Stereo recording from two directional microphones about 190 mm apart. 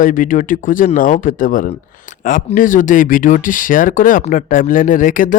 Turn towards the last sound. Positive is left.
turn(degrees=45)  # may be behind; listen again after turning